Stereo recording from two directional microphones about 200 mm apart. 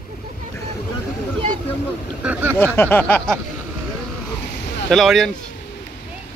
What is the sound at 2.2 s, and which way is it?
Vehicle, 10° right (ahead or behind).